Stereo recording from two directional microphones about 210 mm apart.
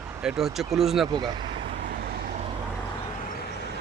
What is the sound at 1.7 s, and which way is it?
Vehicle, 40° right (ahead or behind).